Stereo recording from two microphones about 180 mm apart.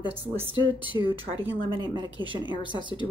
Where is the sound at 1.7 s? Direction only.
25° right (ahead or behind).